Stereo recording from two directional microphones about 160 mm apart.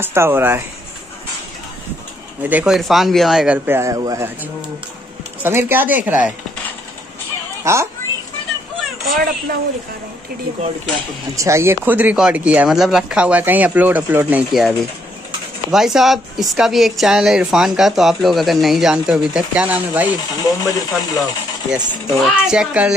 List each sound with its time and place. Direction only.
0.0 s speech: 15° right (ahead or behind)
2.4 s speech: 5° right (ahead or behind)
7.6 s speech: 15° right (ahead or behind)
9.1 s speech: 60° right (ahead or behind)
11.3 s speech: 20° right (ahead or behind)
15.7 s speech: 5° right (ahead or behind)
20.2 s speech: 20° left (ahead or behind)
21.6 s speech: 5° right (ahead or behind)